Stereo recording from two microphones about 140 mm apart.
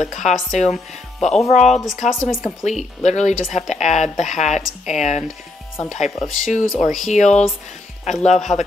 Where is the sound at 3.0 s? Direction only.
55° left (ahead or behind).